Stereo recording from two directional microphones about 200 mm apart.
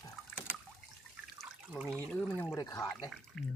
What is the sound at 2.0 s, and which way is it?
Speech, 10° left (ahead or behind).